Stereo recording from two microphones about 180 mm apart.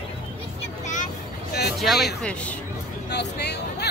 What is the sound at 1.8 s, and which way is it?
Speech, centre (ahead or behind).